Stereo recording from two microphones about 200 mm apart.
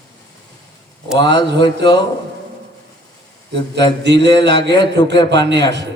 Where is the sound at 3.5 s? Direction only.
20° left (ahead or behind).